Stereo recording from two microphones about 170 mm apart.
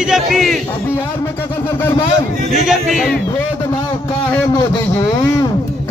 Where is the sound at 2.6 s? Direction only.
Centre (ahead or behind).